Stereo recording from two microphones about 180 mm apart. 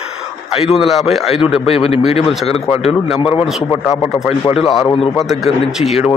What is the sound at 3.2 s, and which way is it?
Speech, 30° left (ahead or behind).